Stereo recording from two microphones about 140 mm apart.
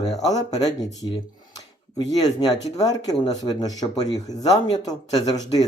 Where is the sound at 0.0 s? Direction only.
25° left (ahead or behind).